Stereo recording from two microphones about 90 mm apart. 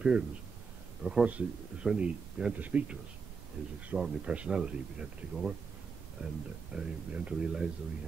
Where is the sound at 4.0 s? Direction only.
10° right (ahead or behind).